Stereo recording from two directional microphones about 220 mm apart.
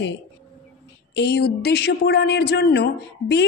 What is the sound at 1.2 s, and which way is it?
Speech, 50° left (ahead or behind).